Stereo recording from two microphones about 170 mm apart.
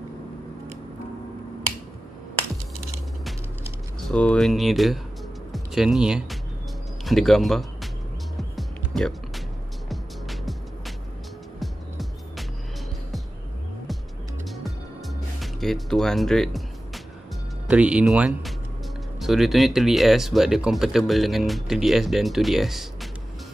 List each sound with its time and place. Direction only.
4.1 s speech: 5° left (ahead or behind)
8.4 s music: centre (ahead or behind)
11.6 s music: centre (ahead or behind)
14.5 s music: centre (ahead or behind)
17.6 s speech: 5° right (ahead or behind)